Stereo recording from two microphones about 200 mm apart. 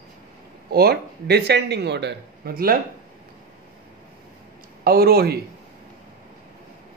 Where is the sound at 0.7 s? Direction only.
50° right (ahead or behind).